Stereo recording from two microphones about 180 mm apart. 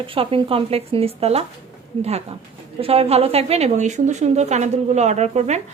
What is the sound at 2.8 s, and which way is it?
A woman's voice, 35° right (ahead or behind).